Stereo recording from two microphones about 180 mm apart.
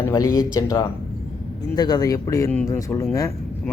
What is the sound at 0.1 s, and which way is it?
Speech, 20° left (ahead or behind).